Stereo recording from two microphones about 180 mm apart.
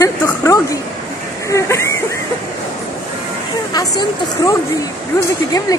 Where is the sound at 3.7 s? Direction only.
20° left (ahead or behind).